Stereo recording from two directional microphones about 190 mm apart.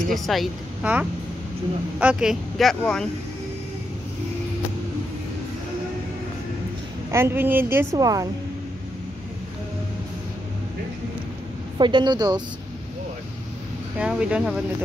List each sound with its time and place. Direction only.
0.1 s speech: centre (ahead or behind)
7.1 s a woman's voice: 15° right (ahead or behind)
11.8 s a woman's voice: 25° right (ahead or behind)
13.9 s speech: 5° right (ahead or behind)